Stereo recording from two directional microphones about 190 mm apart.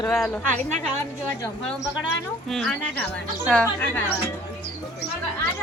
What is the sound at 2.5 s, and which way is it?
A woman's voice, 5° left (ahead or behind).